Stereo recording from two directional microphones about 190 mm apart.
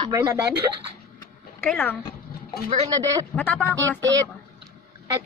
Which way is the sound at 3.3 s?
10° left (ahead or behind).